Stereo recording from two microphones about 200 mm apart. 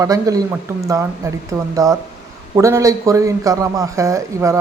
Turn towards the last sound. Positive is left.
turn(degrees=-15)  # may be behind; listen again after turning